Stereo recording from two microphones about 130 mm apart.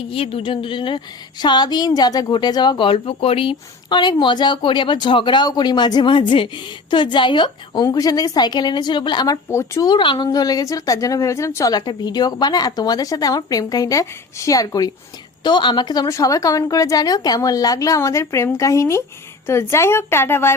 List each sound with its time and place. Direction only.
0.1 s a woman's voice: 45° left (ahead or behind); by 9.9 s 20° left (ahead or behind)
9.9 s a woman's voice: 35° left (ahead or behind); by 20.5 s 20° left (ahead or behind)